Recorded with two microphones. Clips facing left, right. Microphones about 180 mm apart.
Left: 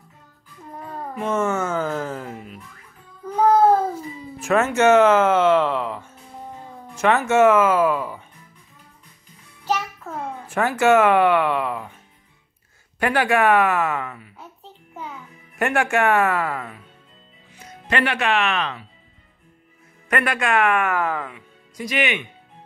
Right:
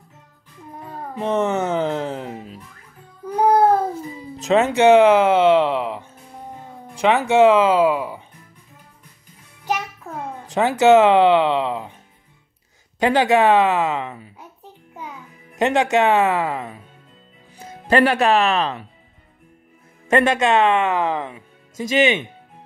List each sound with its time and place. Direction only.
1.2 s music: 15° right (ahead or behind)
3.3 s child singing: 15° right (ahead or behind)
4.5 s speech: 15° right (ahead or behind)
10.4 s a sound: 15° right (ahead or behind)
10.8 s speech: 20° right (ahead or behind)
13.0 s speech: 20° right (ahead or behind)
15.5 s speech: 20° right (ahead or behind)
17.5 s speech: 30° right (ahead or behind)
20.1 s speech: 25° right (ahead or behind)